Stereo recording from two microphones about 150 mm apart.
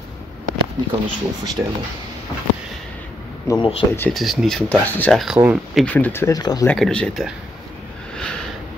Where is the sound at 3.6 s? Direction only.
35° left (ahead or behind).